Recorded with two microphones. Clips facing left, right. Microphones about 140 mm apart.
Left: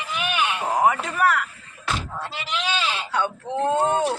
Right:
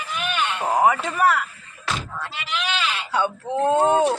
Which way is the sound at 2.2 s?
30° left (ahead or behind).